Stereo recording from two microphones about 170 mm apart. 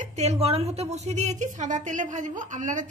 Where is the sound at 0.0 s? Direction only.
40° right (ahead or behind).